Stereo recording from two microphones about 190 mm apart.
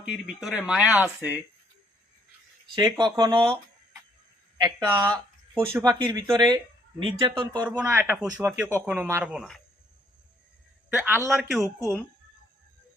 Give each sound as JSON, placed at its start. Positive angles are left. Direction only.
{"t": 0.0, "sound": "speech", "side_deg": -5}
{"t": 2.7, "sound": "speech", "side_deg": -20}
{"t": 7.8, "sound": "speech", "side_deg": -10}
{"t": 9.3, "sound": "speech", "side_deg": 0}
{"t": 10.8, "sound": "speech", "side_deg": -10}